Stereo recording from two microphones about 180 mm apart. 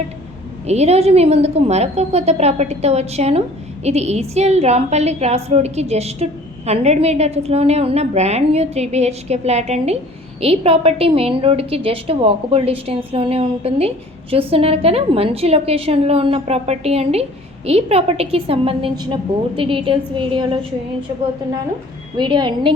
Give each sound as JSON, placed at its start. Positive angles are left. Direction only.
{"t": 0.7, "sound": "a woman's voice", "side_deg": -35}
{"t": 22.2, "sound": "a woman's voice", "side_deg": -25}